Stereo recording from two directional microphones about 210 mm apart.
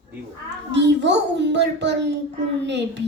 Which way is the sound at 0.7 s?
55° right (ahead or behind).